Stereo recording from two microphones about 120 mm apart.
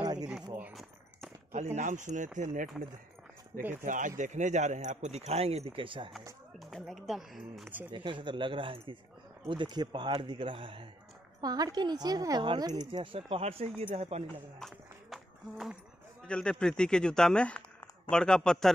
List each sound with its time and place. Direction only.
0.0 s a sound: 35° right (ahead or behind)
1.8 s speech: 85° right
3.8 s a man's voice: 90° right; by 6.1 s 45° right (ahead or behind)
6.6 s speech: centre (ahead or behind)
7.9 s speech: 40° right (ahead or behind)
11.4 s a woman's voice: 35° right (ahead or behind); by 14.2 s 60° right (ahead or behind)
14.6 s speech: centre (ahead or behind)